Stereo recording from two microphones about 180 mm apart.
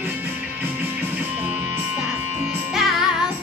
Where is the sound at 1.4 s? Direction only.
10° right (ahead or behind).